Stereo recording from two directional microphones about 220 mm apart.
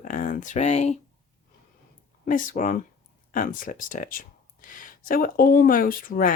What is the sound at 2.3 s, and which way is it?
Speech, 35° left (ahead or behind).